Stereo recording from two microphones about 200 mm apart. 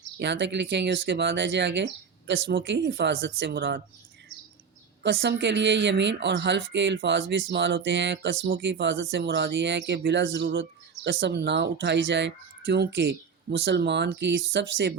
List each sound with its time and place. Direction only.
0.2 s speech: 60° right (ahead or behind)
5.0 s speech: 60° right (ahead or behind)